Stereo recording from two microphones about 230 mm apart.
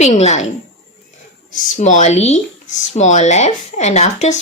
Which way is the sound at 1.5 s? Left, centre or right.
Left.